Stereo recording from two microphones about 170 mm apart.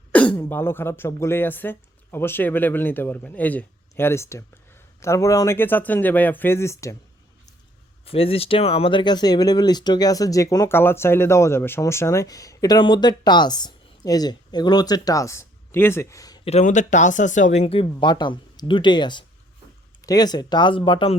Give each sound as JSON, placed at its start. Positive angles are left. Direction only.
{"t": 0.1, "sound": "speech", "side_deg": 10}
{"t": 8.0, "sound": "speech", "side_deg": 35}
{"t": 16.4, "sound": "speech", "side_deg": 40}